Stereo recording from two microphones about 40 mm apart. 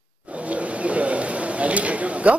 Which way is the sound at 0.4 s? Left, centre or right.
Right.